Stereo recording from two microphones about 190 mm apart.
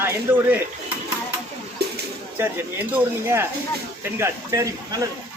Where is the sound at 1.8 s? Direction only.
60° right (ahead or behind).